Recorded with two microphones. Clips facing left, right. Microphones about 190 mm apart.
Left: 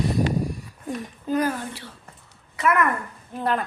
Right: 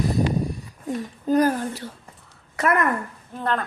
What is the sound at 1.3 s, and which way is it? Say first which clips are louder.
A woman's voice: right 4 dB; 40° right (ahead or behind).